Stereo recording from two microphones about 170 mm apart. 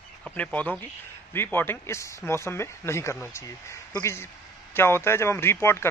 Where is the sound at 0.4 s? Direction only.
10° left (ahead or behind).